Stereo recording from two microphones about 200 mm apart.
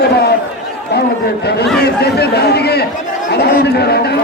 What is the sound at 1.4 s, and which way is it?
Speech, 55° left (ahead or behind).